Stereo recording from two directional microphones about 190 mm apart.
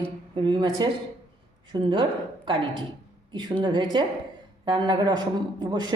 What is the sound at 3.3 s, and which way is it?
A woman's voice, 25° right (ahead or behind).